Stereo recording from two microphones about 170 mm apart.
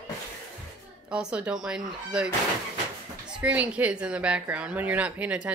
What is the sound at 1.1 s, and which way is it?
Speech, 5° right (ahead or behind).